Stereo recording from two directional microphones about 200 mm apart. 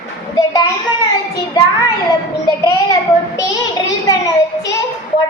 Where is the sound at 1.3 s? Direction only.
15° left (ahead or behind).